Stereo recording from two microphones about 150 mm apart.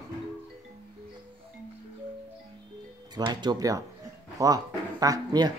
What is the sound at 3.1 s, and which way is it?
Speech, 30° right (ahead or behind).